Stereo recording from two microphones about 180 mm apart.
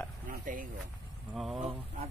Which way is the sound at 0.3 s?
50° right (ahead or behind).